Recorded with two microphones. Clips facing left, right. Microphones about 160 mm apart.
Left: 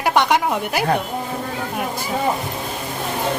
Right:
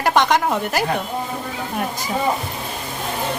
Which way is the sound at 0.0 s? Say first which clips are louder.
Even; 10° left (ahead or behind).